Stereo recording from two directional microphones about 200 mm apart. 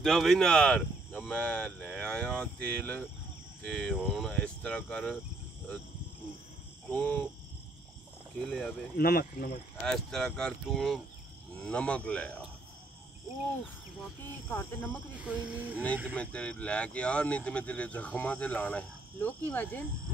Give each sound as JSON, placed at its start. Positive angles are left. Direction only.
{"t": 0.0, "sound": "speech", "side_deg": 0}
{"t": 6.9, "sound": "speech", "side_deg": 10}
{"t": 8.4, "sound": "speech", "side_deg": 0}
{"t": 8.9, "sound": "speech", "side_deg": 50}
{"t": 9.8, "sound": "speech", "side_deg": 5}
{"t": 14.2, "sound": "speech", "side_deg": 10}
{"t": 15.2, "sound": "speech", "side_deg": -5}
{"t": 16.2, "sound": "speech", "side_deg": 5}